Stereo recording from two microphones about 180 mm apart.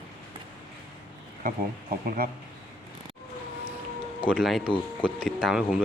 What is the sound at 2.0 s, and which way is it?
Speech, 50° right (ahead or behind).